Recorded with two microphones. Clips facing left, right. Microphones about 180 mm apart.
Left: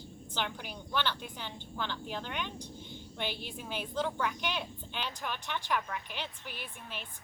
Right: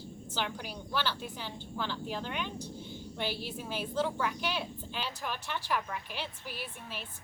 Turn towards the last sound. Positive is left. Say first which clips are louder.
# right 2 dB
turn(degrees=-40)  # may be behind; listen again after turning